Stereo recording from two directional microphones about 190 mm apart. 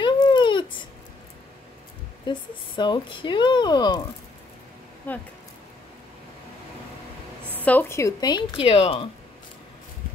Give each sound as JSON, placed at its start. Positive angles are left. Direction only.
{"t": 0.0, "sound": "a sound", "side_deg": 25}
{"t": 2.2, "sound": "speech", "side_deg": 25}
{"t": 5.1, "sound": "speech", "side_deg": 10}
{"t": 7.6, "sound": "speech", "side_deg": 10}